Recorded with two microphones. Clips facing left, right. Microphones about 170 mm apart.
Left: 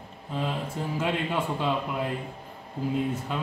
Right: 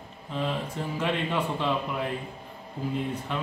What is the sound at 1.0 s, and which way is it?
Speech, 5° left (ahead or behind).